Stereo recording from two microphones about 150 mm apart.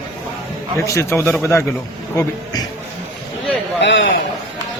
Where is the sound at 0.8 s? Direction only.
20° left (ahead or behind).